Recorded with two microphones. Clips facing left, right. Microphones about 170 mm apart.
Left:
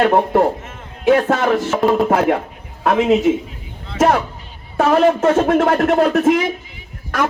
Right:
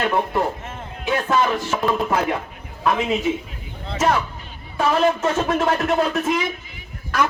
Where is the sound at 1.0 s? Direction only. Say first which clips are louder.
Left 6 dB; 65° left (ahead or behind).